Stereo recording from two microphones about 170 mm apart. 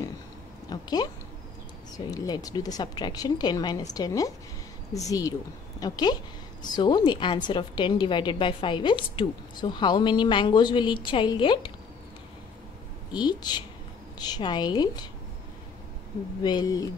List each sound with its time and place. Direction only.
0.7 s a woman's voice: 25° left (ahead or behind)
13.1 s a woman's voice: 25° left (ahead or behind)
16.4 s a woman's voice: 25° left (ahead or behind)